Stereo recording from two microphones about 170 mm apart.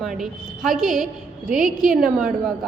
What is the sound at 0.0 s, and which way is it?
A woman's voice, centre (ahead or behind).